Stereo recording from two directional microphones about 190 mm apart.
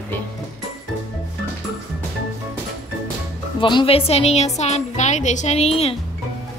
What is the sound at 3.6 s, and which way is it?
A woman's voice, 25° left (ahead or behind).